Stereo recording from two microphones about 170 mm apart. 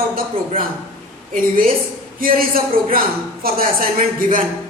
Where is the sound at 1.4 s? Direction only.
55° right (ahead or behind).